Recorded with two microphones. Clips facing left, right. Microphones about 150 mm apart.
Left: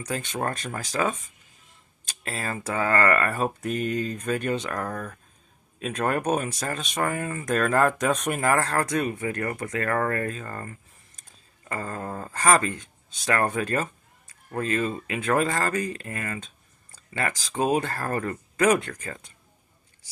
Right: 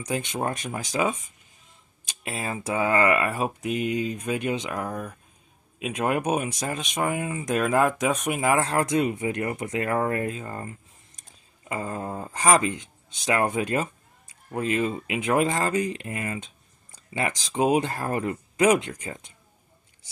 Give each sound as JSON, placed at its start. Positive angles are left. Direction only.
{"t": 0.0, "sound": "speech", "side_deg": -15}